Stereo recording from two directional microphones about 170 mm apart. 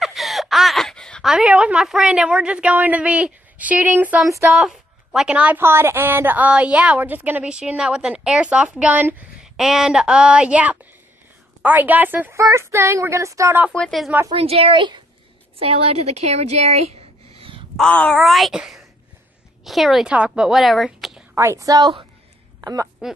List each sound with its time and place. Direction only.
0.0 s a woman's voice: centre (ahead or behind); by 13.7 s 15° right (ahead or behind)
13.7 s a woman's voice: centre (ahead or behind)
14.3 s a woman's voice: 35° right (ahead or behind)
17.7 s a woman's voice: 5° left (ahead or behind)
21.4 s a woman's voice: 15° right (ahead or behind)